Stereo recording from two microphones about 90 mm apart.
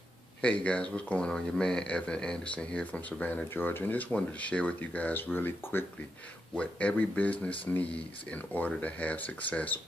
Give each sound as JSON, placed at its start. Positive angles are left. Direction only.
{"t": 0.4, "sound": "speech", "side_deg": 10}